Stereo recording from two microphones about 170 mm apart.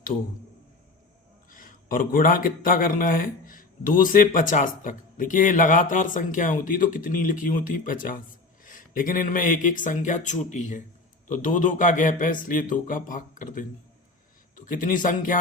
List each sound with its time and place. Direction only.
1.5 s a man's voice: 55° left (ahead or behind)